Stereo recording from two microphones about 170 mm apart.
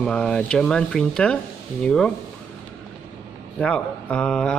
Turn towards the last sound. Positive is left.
turn(degrees=5)  # may be behind; listen again after turning